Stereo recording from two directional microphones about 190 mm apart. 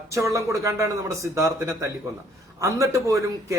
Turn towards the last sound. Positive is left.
turn(degrees=-15)  # may be behind; listen again after turning